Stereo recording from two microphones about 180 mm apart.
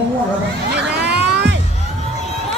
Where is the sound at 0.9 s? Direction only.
70° right (ahead or behind).